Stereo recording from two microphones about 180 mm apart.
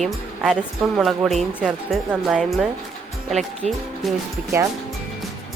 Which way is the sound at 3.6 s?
40° right (ahead or behind).